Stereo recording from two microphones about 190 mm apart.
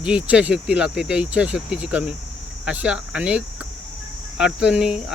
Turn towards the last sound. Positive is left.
turn(degrees=-5)  # may be behind; listen again after turning